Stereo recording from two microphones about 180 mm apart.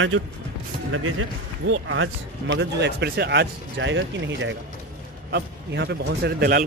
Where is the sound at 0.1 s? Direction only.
90° right.